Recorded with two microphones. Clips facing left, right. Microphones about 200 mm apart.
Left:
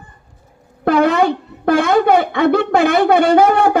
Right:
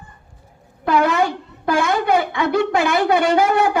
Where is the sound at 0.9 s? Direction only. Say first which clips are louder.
Left 4 dB; 55° left (ahead or behind).